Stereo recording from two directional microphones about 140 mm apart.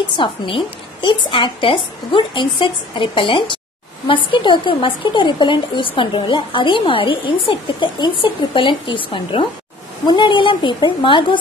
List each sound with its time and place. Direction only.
0.2 s a woman's voice: 35° left (ahead or behind)